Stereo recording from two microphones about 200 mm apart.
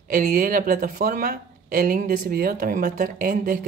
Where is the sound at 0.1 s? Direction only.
45° right (ahead or behind).